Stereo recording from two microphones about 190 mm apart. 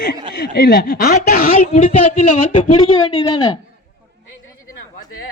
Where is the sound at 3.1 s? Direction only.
25° left (ahead or behind).